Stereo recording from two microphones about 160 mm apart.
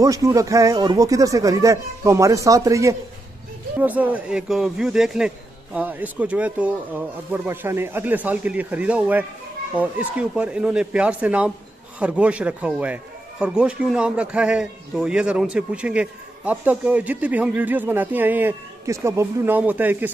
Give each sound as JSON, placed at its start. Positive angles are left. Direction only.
{"t": 0.0, "sound": "a man's voice", "side_deg": -20}